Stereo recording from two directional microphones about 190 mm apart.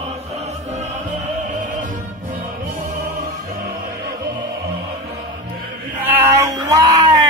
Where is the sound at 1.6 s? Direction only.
40° right (ahead or behind).